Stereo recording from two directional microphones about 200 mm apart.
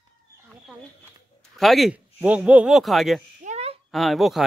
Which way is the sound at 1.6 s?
Centre (ahead or behind).